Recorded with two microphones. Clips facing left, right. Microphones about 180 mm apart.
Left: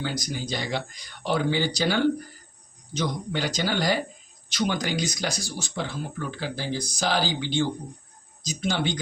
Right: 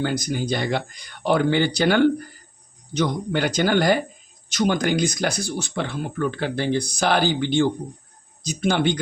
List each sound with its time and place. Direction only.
0.0 s speech: 55° right (ahead or behind)